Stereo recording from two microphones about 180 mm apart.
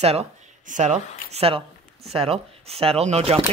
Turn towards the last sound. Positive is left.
turn(degrees=-35)  # may be behind; listen again after turning